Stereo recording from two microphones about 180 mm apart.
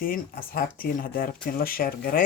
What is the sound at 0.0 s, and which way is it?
Speech, 55° left (ahead or behind).